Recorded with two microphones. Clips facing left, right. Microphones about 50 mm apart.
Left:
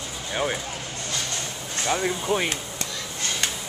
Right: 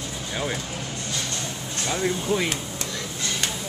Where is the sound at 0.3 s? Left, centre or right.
Centre.